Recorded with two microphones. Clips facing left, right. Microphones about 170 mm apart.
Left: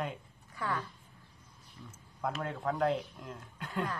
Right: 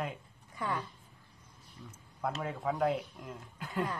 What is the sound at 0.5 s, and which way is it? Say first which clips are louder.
Speech: even; 20° right (ahead or behind).